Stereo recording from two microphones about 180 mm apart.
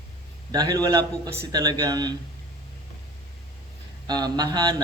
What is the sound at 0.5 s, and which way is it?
Speech, 20° right (ahead or behind).